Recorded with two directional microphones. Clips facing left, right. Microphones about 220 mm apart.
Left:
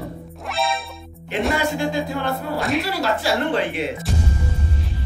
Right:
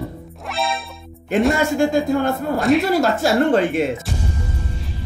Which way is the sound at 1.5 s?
45° right (ahead or behind).